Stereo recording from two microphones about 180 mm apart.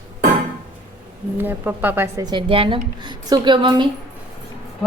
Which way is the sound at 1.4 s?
10° right (ahead or behind).